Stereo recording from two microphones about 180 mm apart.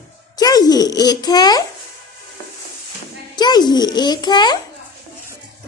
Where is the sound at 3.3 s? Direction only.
25° left (ahead or behind).